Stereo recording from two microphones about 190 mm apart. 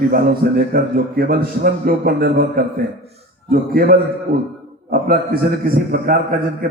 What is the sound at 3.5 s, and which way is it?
Speech, 50° right (ahead or behind).